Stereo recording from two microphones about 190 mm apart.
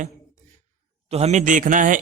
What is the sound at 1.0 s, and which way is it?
Speech, 35° right (ahead or behind).